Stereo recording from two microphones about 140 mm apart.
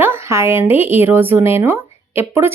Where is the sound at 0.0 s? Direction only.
15° right (ahead or behind).